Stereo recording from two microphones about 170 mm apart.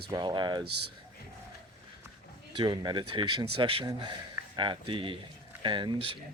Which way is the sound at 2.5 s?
25° right (ahead or behind).